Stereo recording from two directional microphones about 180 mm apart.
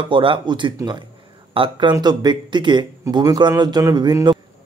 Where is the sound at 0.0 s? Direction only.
30° right (ahead or behind).